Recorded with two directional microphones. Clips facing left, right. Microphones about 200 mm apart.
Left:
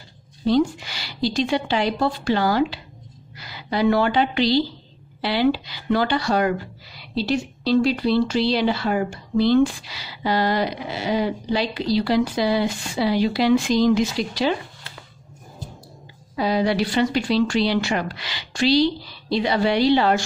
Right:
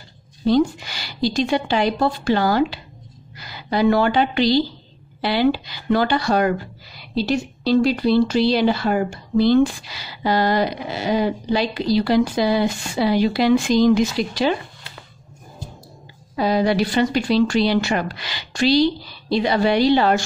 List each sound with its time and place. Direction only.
0.5 s a woman's voice: 45° right (ahead or behind)
16.3 s a woman's voice: 45° right (ahead or behind)